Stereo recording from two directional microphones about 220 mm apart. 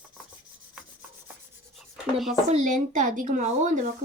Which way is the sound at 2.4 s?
35° right (ahead or behind).